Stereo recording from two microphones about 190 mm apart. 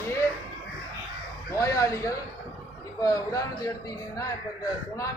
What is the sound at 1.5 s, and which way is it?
Speech, 15° left (ahead or behind).